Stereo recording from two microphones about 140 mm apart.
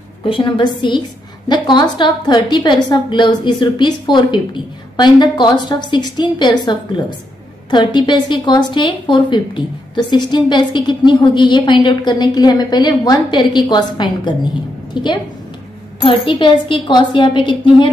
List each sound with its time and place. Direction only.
0.2 s a woman's voice: 35° left (ahead or behind)